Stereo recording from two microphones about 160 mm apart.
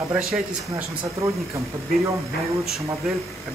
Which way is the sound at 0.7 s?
20° right (ahead or behind).